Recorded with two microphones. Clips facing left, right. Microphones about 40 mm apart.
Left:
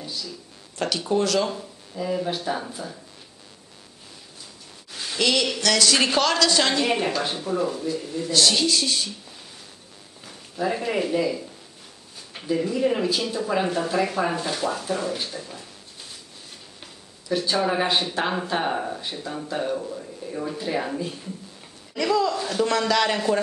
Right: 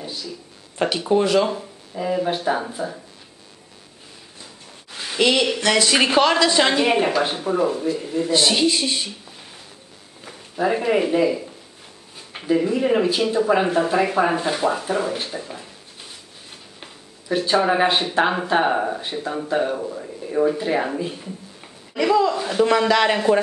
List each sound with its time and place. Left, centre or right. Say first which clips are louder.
0.0 s a sound: right 2 dB; centre
0.7 s speech: right 4 dB; right
4.9 s speech: right 4 dB; right
16.8 s speech: right 4 dB; right